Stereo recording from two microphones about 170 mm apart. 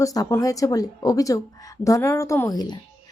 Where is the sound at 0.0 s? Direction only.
20° left (ahead or behind).